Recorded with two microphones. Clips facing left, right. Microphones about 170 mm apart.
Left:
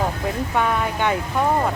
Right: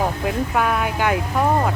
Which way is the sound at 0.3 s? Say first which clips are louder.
Even; 5° right (ahead or behind).